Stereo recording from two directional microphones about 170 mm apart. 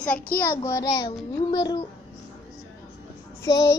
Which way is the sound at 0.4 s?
15° left (ahead or behind).